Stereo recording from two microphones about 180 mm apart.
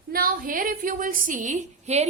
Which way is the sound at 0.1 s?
50° right (ahead or behind).